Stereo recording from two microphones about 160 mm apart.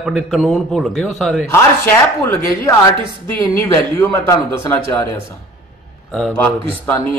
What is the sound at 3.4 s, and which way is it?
Speech, 15° left (ahead or behind).